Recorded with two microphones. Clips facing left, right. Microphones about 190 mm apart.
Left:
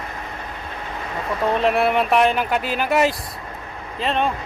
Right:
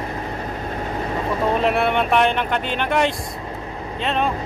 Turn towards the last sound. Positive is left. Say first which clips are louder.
# even
turn(degrees=0)  # may be behind; listen again after turning